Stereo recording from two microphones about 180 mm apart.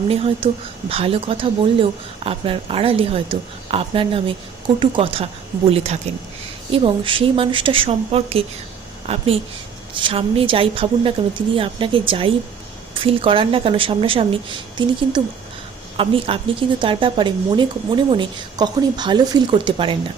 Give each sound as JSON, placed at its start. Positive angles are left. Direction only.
{"t": 0.1, "sound": "speech", "side_deg": -30}
{"t": 16.0, "sound": "speech", "side_deg": -30}